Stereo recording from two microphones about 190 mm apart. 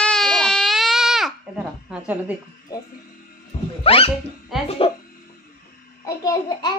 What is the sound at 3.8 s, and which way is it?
Speech, 30° left (ahead or behind).